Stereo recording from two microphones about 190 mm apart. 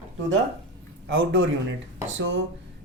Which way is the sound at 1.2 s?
90° right.